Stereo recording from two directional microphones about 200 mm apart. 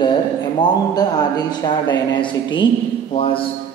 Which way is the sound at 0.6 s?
20° left (ahead or behind).